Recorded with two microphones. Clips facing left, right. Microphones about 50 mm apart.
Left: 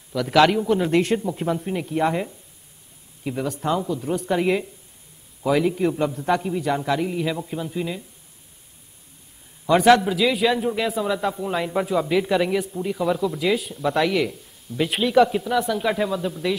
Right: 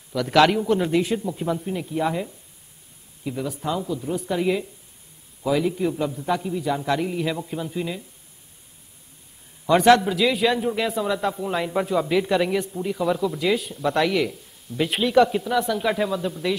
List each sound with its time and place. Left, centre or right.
0.1 s a man's voice: centre
1.3 s speech: centre
3.4 s a man's voice: centre
4.4 s a man's voice: centre
6.9 s a man's voice: centre
9.7 s a man's voice: centre